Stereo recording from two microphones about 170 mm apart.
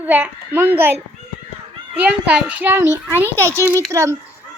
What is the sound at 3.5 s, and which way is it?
Speech, 15° left (ahead or behind).